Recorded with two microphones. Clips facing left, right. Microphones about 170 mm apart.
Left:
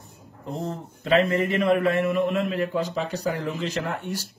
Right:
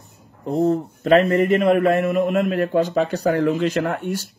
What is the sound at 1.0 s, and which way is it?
A man's voice, 45° right (ahead or behind).